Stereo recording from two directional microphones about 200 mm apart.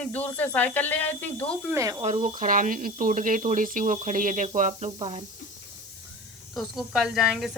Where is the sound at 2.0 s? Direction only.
35° right (ahead or behind).